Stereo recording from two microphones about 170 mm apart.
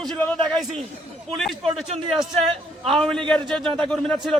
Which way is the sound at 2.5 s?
30° right (ahead or behind).